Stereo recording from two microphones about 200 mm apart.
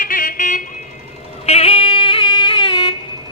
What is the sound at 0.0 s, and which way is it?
Vehicle, 45° left (ahead or behind).